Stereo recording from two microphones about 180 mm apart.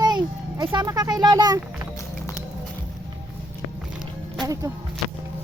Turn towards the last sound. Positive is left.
turn(degrees=-20)  # may be behind; listen again after turning